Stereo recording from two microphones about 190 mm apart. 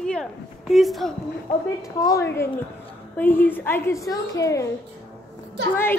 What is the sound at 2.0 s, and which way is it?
A woman's voice, 15° left (ahead or behind).